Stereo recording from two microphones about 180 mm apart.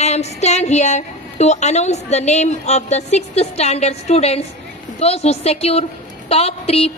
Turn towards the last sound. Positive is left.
turn(degrees=35)  # may be behind; listen again after turning